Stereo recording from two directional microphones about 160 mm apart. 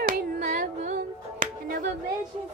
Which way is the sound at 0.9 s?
60° right (ahead or behind).